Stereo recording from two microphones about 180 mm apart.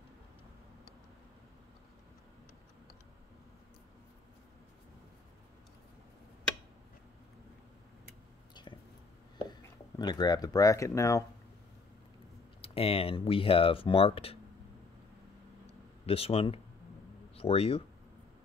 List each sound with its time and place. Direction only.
8.6 s a sound: 25° left (ahead or behind)
9.5 s speech: 20° left (ahead or behind)
12.6 s speech: 30° left (ahead or behind)
16.1 s speech: 30° left (ahead or behind)